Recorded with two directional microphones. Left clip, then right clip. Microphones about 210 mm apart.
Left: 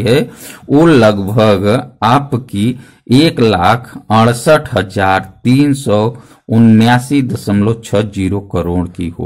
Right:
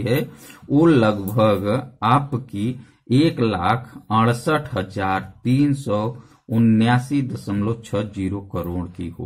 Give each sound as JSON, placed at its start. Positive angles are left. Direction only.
{"t": 0.0, "sound": "a man's voice", "side_deg": 45}